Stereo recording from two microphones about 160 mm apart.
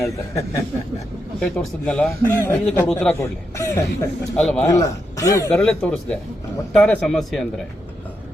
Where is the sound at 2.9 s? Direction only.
5° left (ahead or behind).